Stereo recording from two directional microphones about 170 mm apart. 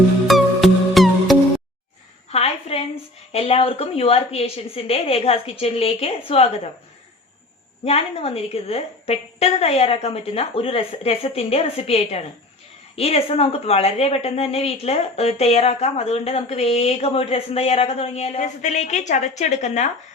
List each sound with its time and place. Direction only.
0.3 s music: centre (ahead or behind)
2.3 s a sound: 35° left (ahead or behind)
3.3 s a woman's voice: 35° left (ahead or behind)
7.9 s a woman's voice: 35° left (ahead or behind)